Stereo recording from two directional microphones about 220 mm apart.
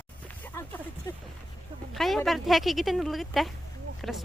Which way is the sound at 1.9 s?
Centre (ahead or behind).